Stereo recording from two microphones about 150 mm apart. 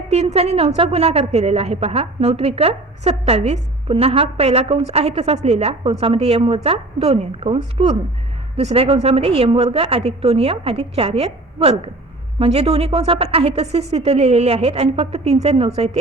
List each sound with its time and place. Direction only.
0.1 s a woman's voice: 45° right (ahead or behind)